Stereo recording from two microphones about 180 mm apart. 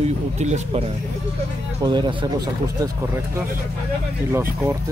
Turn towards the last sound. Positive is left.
turn(degrees=-15)  # may be behind; listen again after turning